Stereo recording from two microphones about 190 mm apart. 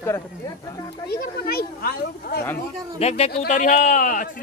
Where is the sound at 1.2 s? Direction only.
55° left (ahead or behind).